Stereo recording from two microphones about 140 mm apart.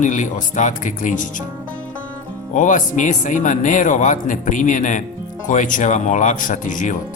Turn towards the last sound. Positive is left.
turn(degrees=65)  # may be behind; listen again after turning